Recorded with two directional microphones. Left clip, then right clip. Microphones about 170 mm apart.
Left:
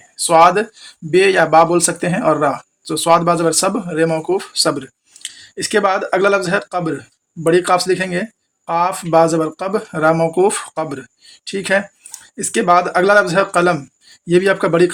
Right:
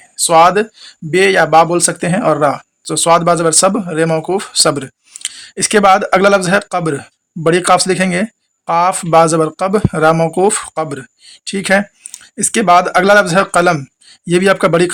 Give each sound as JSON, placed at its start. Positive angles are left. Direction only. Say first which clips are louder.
{"t": 0.2, "sound": "speech", "louder": "right 2 dB", "side_deg": -35}